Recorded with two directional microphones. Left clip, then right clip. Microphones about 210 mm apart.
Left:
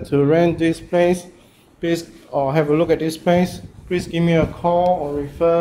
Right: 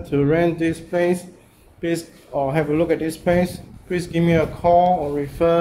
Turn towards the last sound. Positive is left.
turn(degrees=-15)  # may be behind; listen again after turning